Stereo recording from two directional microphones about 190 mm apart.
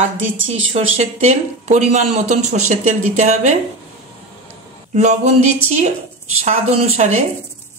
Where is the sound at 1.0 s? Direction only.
40° right (ahead or behind).